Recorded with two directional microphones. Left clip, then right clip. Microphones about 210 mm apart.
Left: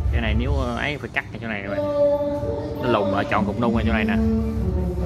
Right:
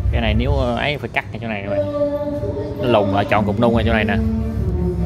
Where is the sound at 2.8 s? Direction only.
10° right (ahead or behind).